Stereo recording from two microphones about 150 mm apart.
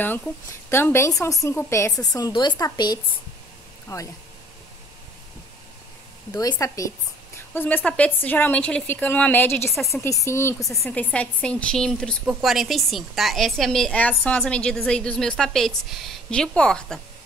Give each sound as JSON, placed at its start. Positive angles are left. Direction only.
{"t": 0.0, "sound": "a woman's voice", "side_deg": 15}
{"t": 6.3, "sound": "a woman's voice", "side_deg": 25}